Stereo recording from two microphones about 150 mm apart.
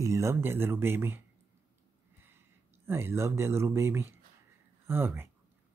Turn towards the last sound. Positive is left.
turn(degrees=-15)  # may be behind; listen again after turning